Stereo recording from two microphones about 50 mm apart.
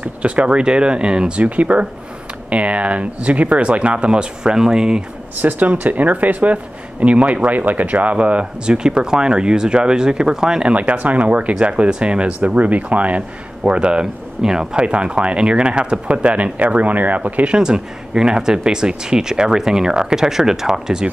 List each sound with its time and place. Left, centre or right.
0.0 s speech: right
5.7 s speech: right; by 10.7 s centre
10.7 s speech: right
17.5 s speech: centre